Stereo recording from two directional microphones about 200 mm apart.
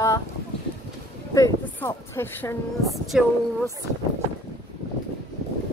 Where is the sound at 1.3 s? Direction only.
15° left (ahead or behind).